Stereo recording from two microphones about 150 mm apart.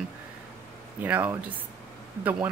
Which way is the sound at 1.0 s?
10° right (ahead or behind).